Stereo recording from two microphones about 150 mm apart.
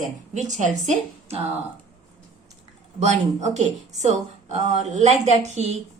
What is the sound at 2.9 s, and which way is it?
Speech, 50° right (ahead or behind).